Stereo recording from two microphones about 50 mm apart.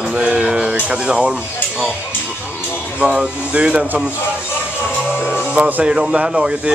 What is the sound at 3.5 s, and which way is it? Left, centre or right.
Speech, right.